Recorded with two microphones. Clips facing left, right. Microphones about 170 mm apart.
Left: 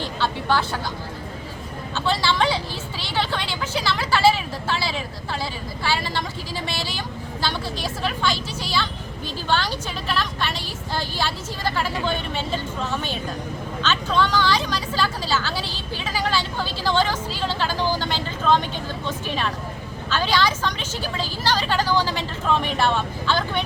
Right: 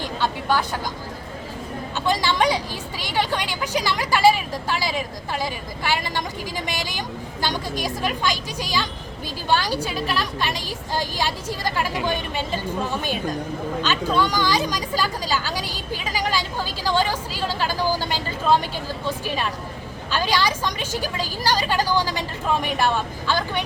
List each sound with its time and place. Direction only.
0.0 s speech: 15° right (ahead or behind)
2.0 s speech: 15° right (ahead or behind)
13.8 s speech: 10° right (ahead or behind)